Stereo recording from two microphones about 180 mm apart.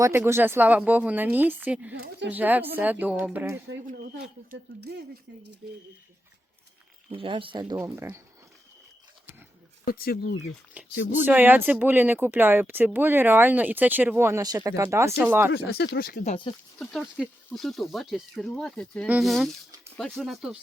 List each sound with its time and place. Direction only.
0.0 s speech: 15° right (ahead or behind)
2.0 s speech: 70° right (ahead or behind)
2.3 s speech: 10° right (ahead or behind)
7.1 s speech: 30° right (ahead or behind)
7.8 s speech: 10° right (ahead or behind)
9.8 s speech: 55° left (ahead or behind)
10.8 s a sound: 10° right (ahead or behind)
11.1 s speech: 10° right (ahead or behind)
15.5 s speech: 65° left (ahead or behind)
16.2 s speech: 30° left (ahead or behind)
16.7 s speech: centre (ahead or behind)